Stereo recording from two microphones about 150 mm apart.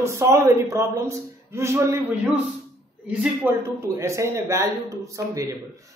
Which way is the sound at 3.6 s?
20° right (ahead or behind).